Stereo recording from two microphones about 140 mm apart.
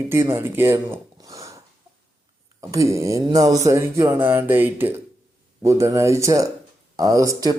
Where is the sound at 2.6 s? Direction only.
25° right (ahead or behind).